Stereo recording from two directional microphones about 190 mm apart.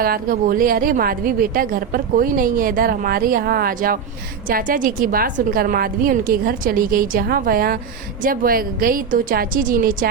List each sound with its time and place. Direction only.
0.0 s a woman's voice: 50° right (ahead or behind)